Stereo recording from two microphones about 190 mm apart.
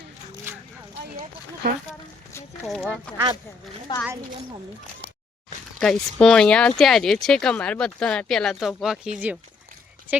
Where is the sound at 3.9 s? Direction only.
25° left (ahead or behind).